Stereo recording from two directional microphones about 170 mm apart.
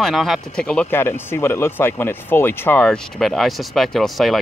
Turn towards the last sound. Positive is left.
turn(degrees=0)  # may be behind; listen again after turning